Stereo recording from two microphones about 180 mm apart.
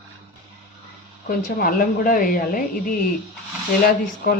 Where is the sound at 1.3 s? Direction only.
55° left (ahead or behind).